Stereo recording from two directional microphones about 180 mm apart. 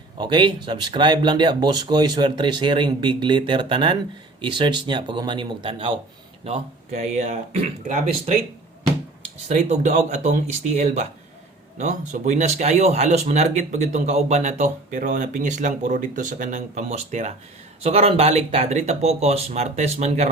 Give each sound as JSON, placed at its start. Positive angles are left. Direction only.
{"t": 0.2, "sound": "speech", "side_deg": -25}
{"t": 9.5, "sound": "speech", "side_deg": -45}